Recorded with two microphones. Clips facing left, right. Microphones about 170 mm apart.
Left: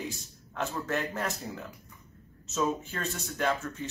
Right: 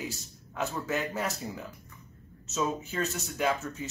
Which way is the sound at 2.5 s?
5° right (ahead or behind).